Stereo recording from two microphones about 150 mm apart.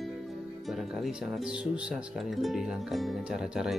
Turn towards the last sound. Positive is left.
turn(degrees=-5)  # may be behind; listen again after turning